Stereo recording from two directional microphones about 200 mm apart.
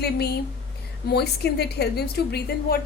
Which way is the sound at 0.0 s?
55° left (ahead or behind).